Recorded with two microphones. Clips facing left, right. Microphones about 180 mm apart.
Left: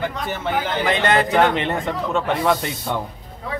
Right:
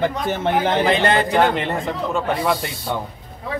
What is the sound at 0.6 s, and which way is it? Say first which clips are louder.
Speech: right 3 dB; 30° right (ahead or behind).